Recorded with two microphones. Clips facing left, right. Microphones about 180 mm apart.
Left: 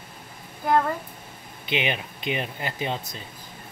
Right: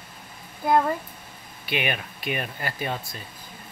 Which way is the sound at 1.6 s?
20° left (ahead or behind).